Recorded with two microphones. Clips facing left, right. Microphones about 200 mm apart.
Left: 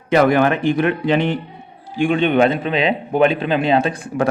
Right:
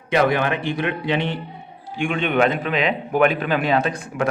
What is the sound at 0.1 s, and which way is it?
Speech, 45° left (ahead or behind).